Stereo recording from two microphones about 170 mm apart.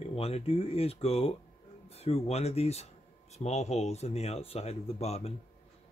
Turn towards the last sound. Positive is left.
turn(degrees=40)  # may be behind; listen again after turning